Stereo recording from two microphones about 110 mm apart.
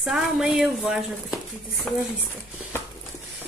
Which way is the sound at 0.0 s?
5° right (ahead or behind).